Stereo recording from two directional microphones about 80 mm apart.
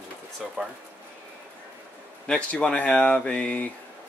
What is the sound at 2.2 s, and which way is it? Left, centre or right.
Speech, centre.